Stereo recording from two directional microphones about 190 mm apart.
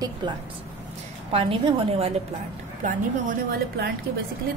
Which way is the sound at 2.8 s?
40° right (ahead or behind).